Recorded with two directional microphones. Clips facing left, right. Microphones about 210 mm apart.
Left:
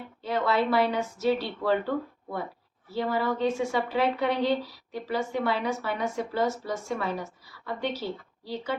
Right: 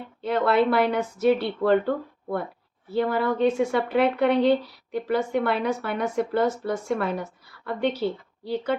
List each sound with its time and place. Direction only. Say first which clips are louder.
0.2 s a woman's voice: right 5 dB; 60° right (ahead or behind)
2.9 s a woman's voice: right 4 dB; 60° right (ahead or behind)